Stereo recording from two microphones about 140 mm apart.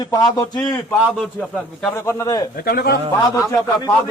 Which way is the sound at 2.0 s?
20° left (ahead or behind).